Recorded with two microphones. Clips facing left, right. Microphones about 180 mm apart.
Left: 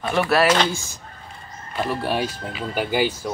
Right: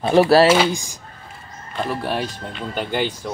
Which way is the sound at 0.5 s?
10° right (ahead or behind).